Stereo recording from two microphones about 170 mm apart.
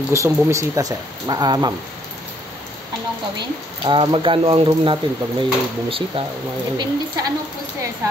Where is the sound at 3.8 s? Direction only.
30° right (ahead or behind).